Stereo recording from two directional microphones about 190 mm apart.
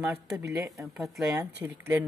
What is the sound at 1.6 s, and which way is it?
Speech, 15° right (ahead or behind).